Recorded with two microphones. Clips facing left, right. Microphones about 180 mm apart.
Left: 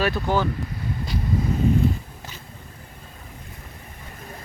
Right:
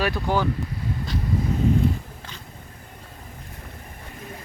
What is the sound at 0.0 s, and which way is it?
Speech, 10° right (ahead or behind).